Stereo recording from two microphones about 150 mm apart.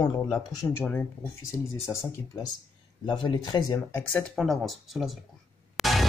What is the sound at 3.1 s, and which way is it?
Speech, 30° left (ahead or behind).